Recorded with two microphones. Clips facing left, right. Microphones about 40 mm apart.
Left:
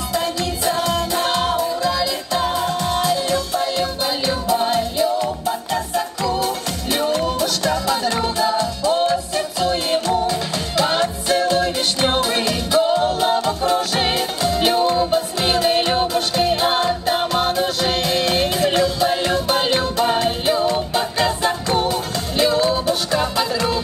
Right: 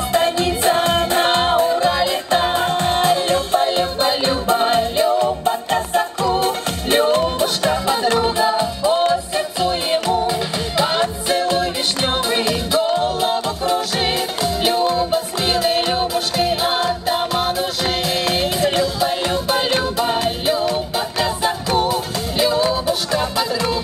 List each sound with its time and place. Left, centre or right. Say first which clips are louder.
0.1 s music: right 5 dB; right; by 23.8 s centre